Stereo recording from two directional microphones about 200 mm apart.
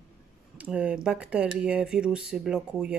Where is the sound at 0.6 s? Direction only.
5° right (ahead or behind).